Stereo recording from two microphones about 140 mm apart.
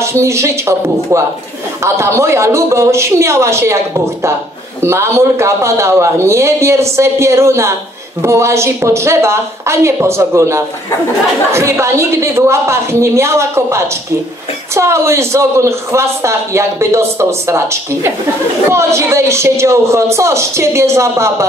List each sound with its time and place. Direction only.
0.0 s a man's voice: 20° right (ahead or behind)